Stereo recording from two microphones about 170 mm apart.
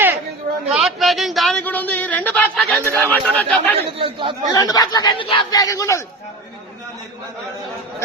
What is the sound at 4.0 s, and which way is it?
Speech, 30° right (ahead or behind).